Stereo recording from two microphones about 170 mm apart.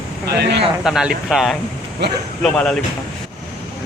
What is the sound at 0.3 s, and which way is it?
Speech, 85° right.